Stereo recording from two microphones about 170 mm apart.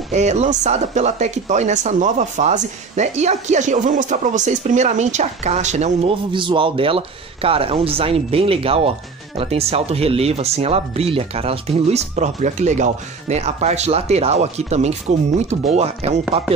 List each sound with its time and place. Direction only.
0.1 s speech: 40° right (ahead or behind)
6.3 s speech: 30° right (ahead or behind)